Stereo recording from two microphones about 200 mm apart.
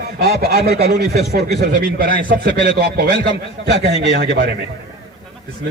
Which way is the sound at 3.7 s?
60° right (ahead or behind).